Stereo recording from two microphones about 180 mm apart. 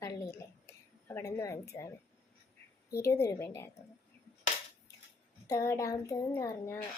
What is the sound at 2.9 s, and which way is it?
Speech, 15° left (ahead or behind).